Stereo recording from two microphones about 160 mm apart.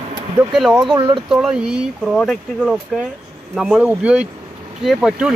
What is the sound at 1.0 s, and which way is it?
Speech, 30° right (ahead or behind).